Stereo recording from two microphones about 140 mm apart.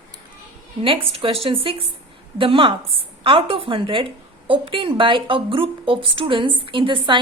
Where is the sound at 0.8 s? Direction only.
40° right (ahead or behind).